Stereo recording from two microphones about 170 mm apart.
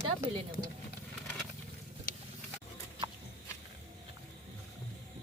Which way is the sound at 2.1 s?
60° left (ahead or behind).